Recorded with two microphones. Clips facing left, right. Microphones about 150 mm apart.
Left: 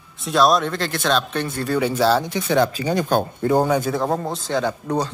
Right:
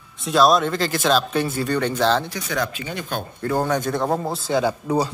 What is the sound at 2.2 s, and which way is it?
A man's voice, 25° left (ahead or behind).